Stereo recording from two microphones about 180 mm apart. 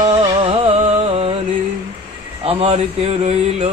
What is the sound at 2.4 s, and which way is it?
Speech, 35° right (ahead or behind).